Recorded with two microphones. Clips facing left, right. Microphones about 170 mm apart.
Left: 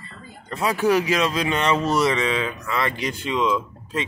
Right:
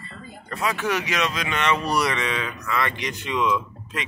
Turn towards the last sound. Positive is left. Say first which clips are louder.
# left 4 dB
turn(degrees=30)  # may be behind; listen again after turning